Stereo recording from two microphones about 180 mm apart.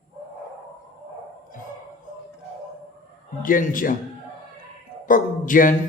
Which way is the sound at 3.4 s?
50° left (ahead or behind).